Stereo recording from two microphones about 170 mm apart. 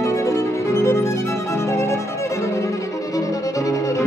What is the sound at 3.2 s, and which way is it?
Music, 20° left (ahead or behind).